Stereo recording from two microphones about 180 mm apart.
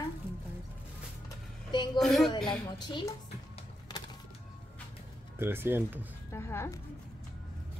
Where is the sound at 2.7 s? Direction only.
25° left (ahead or behind).